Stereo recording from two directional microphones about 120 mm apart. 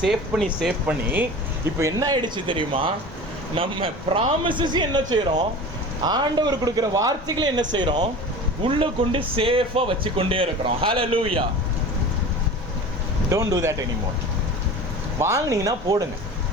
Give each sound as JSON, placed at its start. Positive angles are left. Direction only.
{"t": 0.0, "sound": "speech", "side_deg": 0}
{"t": 1.8, "sound": "a man's voice", "side_deg": -30}
{"t": 13.3, "sound": "speech", "side_deg": -25}
{"t": 15.2, "sound": "speech", "side_deg": -25}